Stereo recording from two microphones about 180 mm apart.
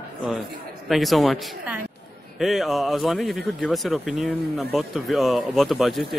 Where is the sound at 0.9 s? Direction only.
Centre (ahead or behind).